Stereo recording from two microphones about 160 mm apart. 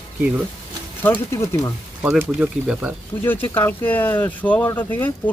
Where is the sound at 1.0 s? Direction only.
15° left (ahead or behind).